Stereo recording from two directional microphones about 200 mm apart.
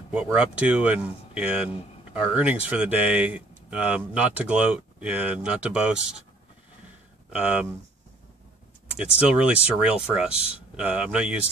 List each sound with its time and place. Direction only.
0.1 s speech: 5° right (ahead or behind)
7.3 s speech: 5° right (ahead or behind)
8.9 s speech: 5° right (ahead or behind)